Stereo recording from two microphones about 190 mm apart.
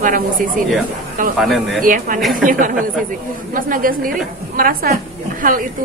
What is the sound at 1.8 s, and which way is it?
Speech, 45° right (ahead or behind).